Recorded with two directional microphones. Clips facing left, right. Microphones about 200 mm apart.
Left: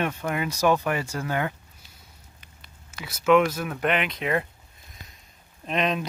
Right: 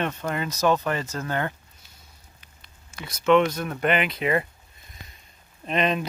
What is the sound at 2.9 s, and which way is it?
Speech, 5° left (ahead or behind).